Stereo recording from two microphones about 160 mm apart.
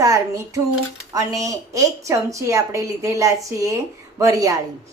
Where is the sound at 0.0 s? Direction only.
20° right (ahead or behind).